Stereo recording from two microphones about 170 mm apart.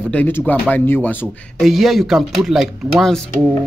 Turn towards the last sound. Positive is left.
turn(degrees=5)  # may be behind; listen again after turning